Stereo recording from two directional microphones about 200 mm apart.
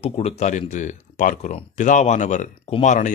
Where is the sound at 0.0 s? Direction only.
30° left (ahead or behind).